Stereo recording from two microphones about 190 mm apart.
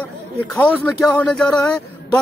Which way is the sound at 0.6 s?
5° left (ahead or behind).